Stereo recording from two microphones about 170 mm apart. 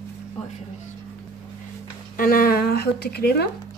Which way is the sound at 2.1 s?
60° left (ahead or behind).